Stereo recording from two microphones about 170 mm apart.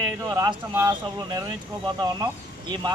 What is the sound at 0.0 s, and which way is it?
Speech, 20° right (ahead or behind).